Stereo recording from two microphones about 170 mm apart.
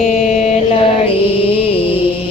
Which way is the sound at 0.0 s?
45° left (ahead or behind).